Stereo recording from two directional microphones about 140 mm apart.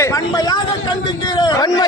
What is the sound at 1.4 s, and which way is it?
Speech, 25° left (ahead or behind).